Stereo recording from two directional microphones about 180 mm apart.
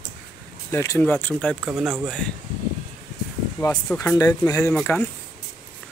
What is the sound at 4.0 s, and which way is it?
Speech, 15° left (ahead or behind).